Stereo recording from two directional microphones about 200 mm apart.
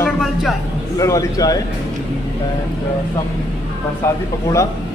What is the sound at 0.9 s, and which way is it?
Speech, 15° left (ahead or behind).